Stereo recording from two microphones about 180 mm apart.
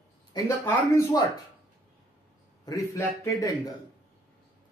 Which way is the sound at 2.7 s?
15° left (ahead or behind).